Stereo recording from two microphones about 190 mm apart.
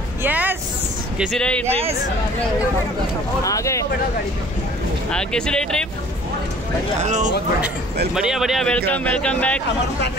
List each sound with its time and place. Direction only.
0.2 s vehicle: 10° right (ahead or behind)
1.1 s a man's voice: centre (ahead or behind)
1.7 s speech: 30° right (ahead or behind)
3.4 s speech: 15° left (ahead or behind)
5.1 s a man's voice: 5° left (ahead or behind)
7.0 s speech: 40° right (ahead or behind)
8.1 s a man's voice: 5° right (ahead or behind)